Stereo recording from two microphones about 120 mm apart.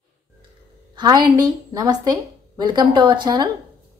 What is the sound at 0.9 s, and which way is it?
A woman's voice, 35° right (ahead or behind).